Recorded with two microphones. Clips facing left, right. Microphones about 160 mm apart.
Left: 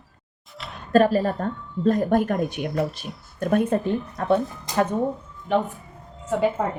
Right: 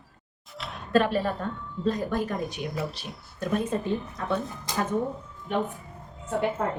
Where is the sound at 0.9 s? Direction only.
40° left (ahead or behind); by 4.8 s 60° left (ahead or behind).